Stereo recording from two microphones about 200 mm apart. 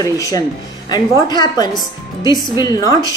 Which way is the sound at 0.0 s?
15° left (ahead or behind).